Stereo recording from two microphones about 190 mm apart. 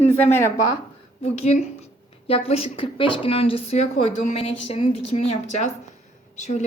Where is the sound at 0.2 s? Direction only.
35° left (ahead or behind).